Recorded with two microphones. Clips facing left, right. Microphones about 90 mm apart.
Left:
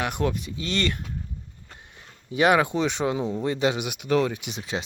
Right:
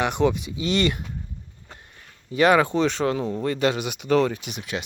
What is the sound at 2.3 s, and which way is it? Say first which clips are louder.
Speech: right 2 dB; 15° left (ahead or behind).